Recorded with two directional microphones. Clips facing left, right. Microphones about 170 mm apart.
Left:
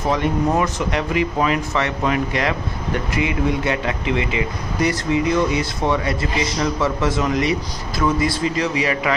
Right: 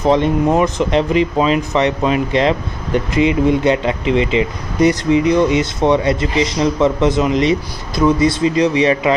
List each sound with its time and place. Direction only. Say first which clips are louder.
0.0 s speech: right 6 dB; 20° right (ahead or behind)